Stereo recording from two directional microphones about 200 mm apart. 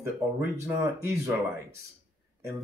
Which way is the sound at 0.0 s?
10° right (ahead or behind).